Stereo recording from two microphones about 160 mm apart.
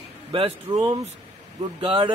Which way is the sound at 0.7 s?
25° right (ahead or behind).